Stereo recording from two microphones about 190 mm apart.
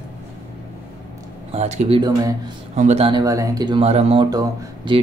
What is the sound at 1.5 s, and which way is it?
Speech, 35° right (ahead or behind).